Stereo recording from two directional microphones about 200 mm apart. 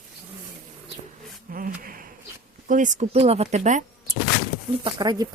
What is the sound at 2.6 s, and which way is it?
Speech, 40° right (ahead or behind).